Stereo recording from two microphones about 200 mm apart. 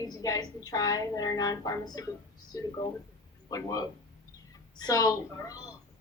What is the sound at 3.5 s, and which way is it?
A woman's voice, 20° left (ahead or behind).